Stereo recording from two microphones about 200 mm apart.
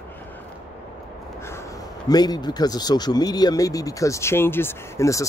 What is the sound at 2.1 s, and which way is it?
Speech, 20° left (ahead or behind).